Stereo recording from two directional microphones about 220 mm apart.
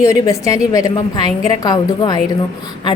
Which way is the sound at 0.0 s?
15° left (ahead or behind).